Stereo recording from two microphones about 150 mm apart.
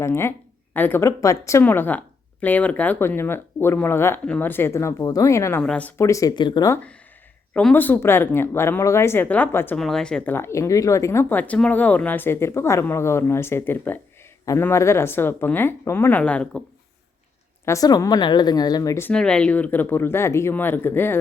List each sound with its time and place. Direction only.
0.0 s speech: 15° left (ahead or behind)
6.1 s a woman's voice: 20° left (ahead or behind)
7.5 s speech: 10° left (ahead or behind)
9.7 s speech: 5° left (ahead or behind)
17.7 s a woman's voice: 25° left (ahead or behind)
19.1 s speech: 5° left (ahead or behind)